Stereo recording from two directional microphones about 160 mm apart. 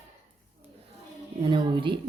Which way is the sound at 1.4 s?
30° right (ahead or behind).